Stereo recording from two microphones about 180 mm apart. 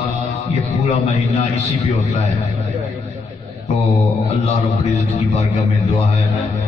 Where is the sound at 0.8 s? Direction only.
40° left (ahead or behind).